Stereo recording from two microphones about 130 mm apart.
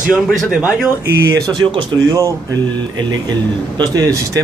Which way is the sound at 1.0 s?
15° right (ahead or behind).